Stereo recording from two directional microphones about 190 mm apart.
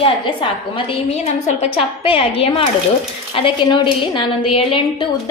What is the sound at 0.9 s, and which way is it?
A woman's voice, 35° left (ahead or behind).